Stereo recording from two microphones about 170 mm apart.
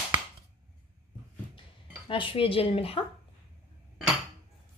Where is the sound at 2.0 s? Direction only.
30° left (ahead or behind).